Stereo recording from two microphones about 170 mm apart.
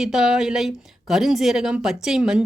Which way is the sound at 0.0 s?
5° right (ahead or behind).